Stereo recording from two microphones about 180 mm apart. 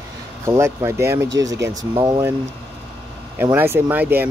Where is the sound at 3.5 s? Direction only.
10° right (ahead or behind).